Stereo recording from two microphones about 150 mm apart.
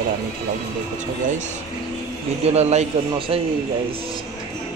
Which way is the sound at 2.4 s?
45° right (ahead or behind).